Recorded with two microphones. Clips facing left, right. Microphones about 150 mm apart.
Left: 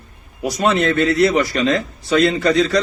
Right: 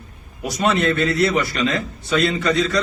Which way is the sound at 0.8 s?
55° left (ahead or behind).